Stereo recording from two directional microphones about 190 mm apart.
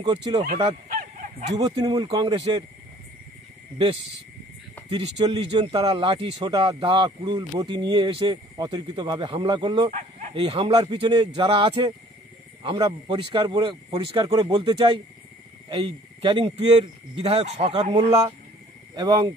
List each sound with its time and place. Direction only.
0.0 s speech: 20° right (ahead or behind)
1.6 s speech: 30° right (ahead or behind)
4.8 s speech: 25° right (ahead or behind)
9.8 s livestock: 40° right (ahead or behind)
10.3 s speech: 30° right (ahead or behind)
18.9 s speech: 20° right (ahead or behind)